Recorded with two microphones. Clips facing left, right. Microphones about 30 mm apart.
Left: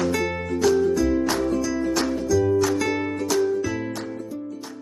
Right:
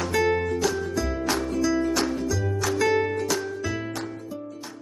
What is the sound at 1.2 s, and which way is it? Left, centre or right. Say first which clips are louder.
Music: left 4 dB; centre.